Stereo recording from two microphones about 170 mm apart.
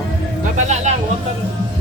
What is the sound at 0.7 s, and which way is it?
Speech, 40° right (ahead or behind).